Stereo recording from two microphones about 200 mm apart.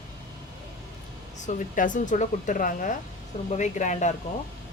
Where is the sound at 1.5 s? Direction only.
40° left (ahead or behind).